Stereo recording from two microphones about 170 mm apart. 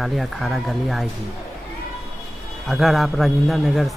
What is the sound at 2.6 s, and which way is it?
Speech, centre (ahead or behind).